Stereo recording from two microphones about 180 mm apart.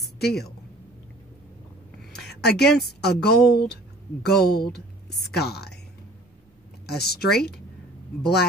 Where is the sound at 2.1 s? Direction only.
65° left (ahead or behind).